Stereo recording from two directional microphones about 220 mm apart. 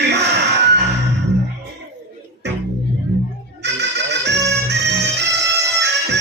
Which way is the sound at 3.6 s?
50° right (ahead or behind).